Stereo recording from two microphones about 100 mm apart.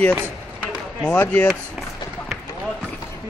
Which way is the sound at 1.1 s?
25° left (ahead or behind).